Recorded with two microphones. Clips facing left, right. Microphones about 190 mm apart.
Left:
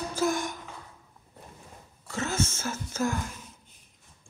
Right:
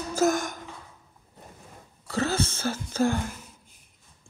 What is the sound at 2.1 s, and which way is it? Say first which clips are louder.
Speech: right 3 dB; 35° right (ahead or behind).